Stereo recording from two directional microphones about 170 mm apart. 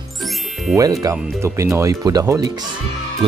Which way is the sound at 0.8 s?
20° right (ahead or behind).